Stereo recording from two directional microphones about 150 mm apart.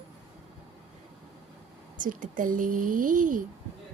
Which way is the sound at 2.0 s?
60° right (ahead or behind).